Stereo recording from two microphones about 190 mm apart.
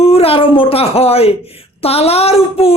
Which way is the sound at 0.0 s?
30° left (ahead or behind).